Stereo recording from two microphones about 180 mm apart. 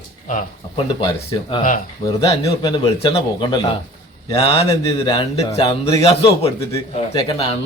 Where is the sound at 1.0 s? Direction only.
30° left (ahead or behind).